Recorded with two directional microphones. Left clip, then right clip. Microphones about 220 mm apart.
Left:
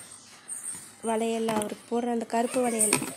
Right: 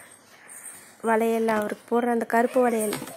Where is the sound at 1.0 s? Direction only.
15° right (ahead or behind).